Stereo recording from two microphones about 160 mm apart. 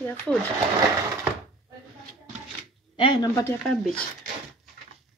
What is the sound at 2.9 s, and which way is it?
Speech, 30° left (ahead or behind).